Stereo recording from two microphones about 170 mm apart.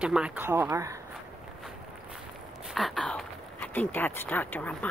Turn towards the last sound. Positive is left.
turn(degrees=10)  # may be behind; listen again after turning